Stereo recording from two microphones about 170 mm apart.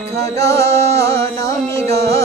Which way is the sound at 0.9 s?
35° right (ahead or behind).